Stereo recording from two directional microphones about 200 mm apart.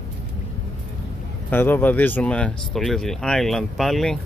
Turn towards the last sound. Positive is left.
turn(degrees=0)  # may be behind; listen again after turning